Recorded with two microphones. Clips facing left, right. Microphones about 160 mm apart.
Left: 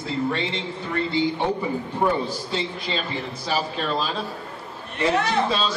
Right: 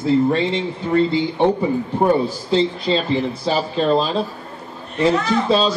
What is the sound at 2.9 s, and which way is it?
Speech, 30° right (ahead or behind).